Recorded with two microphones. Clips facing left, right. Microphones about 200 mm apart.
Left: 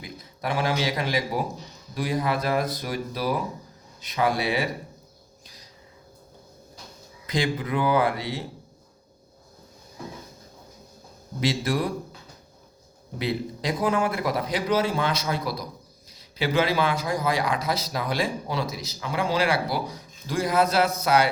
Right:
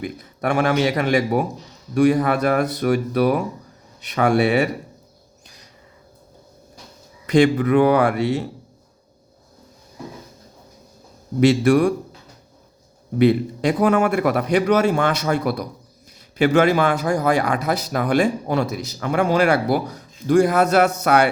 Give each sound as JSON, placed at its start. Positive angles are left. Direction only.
{"t": 0.0, "sound": "a man's voice", "side_deg": -60}
{"t": 7.3, "sound": "a man's voice", "side_deg": -70}
{"t": 11.3, "sound": "speech", "side_deg": -70}
{"t": 13.1, "sound": "a man's voice", "side_deg": -60}
{"t": 16.6, "sound": "a man's voice", "side_deg": -50}